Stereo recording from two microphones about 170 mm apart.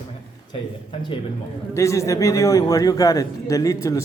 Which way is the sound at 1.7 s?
15° left (ahead or behind).